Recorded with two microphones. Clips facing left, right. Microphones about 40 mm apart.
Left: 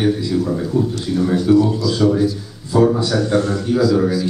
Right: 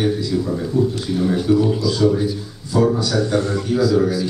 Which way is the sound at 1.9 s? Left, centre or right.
Centre.